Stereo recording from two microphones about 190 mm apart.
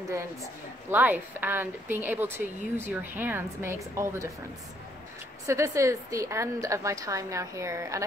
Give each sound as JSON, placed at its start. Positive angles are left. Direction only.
{"t": 0.8, "sound": "speech", "side_deg": -10}
{"t": 5.5, "sound": "speech", "side_deg": -15}